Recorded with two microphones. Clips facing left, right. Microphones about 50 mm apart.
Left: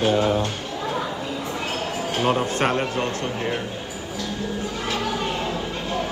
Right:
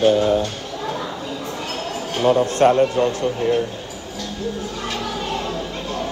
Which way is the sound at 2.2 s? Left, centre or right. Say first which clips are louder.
Right 8 dB; left.